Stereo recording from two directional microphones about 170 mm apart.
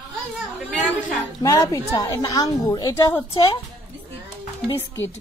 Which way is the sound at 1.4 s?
20° left (ahead or behind).